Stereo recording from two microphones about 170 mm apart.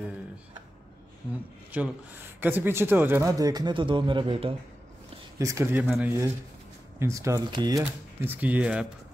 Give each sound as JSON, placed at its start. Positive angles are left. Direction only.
{"t": 1.7, "sound": "speech", "side_deg": -10}
{"t": 5.4, "sound": "speech", "side_deg": -15}
{"t": 7.0, "sound": "speech", "side_deg": -15}
{"t": 7.8, "sound": "speech", "side_deg": -10}